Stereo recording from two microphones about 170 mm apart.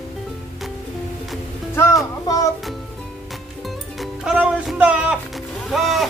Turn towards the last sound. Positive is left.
turn(degrees=0)  # may be behind; listen again after turning